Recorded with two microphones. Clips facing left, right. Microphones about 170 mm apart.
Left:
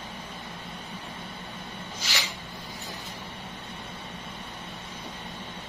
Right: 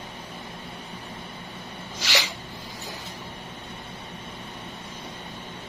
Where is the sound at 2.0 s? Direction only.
90° right.